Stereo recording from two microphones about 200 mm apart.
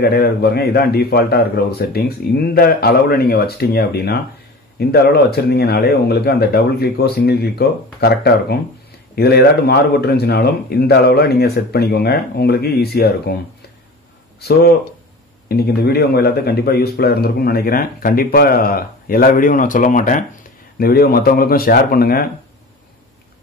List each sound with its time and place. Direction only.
0.0 s a man's voice: 50° left (ahead or behind)
14.4 s a man's voice: 55° left (ahead or behind)